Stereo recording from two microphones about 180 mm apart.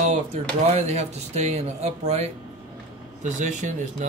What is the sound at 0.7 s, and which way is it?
Speech, 35° right (ahead or behind).